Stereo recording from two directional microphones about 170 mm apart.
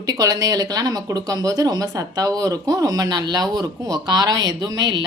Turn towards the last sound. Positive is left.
turn(degrees=-25)  # may be behind; listen again after turning